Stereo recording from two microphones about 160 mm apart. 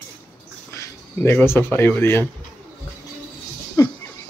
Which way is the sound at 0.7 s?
20° left (ahead or behind).